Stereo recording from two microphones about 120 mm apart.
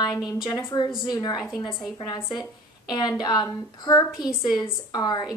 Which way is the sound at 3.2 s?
35° left (ahead or behind).